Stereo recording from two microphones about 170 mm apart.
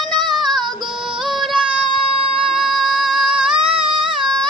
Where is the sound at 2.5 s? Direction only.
Centre (ahead or behind).